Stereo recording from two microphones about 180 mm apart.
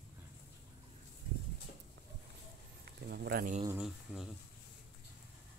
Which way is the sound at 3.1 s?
60° right (ahead or behind).